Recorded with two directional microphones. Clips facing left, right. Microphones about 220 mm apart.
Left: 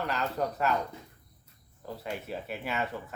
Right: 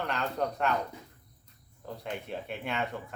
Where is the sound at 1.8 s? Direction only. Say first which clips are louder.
Left 1 dB; 5° left (ahead or behind).